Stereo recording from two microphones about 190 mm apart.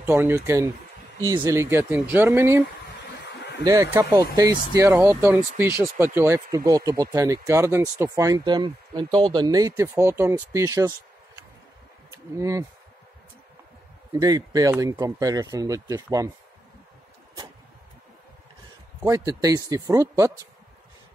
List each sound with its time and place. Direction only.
0.0 s speech: 10° right (ahead or behind)
3.6 s speech: 15° right (ahead or behind)
12.4 s speech: 15° right (ahead or behind)
14.1 s speech: 20° right (ahead or behind)
19.0 s speech: 20° right (ahead or behind)